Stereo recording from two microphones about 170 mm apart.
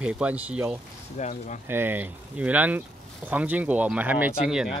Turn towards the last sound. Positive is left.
turn(degrees=-5)  # may be behind; listen again after turning